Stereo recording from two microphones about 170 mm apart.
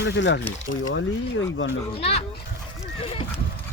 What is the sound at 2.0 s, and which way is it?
Speech, 35° left (ahead or behind).